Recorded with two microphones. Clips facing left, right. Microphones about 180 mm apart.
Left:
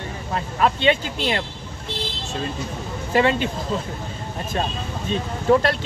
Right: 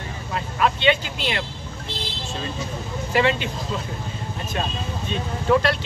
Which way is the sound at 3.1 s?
40° left (ahead or behind).